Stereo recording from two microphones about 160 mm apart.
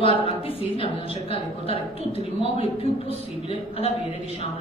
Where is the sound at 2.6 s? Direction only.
35° left (ahead or behind).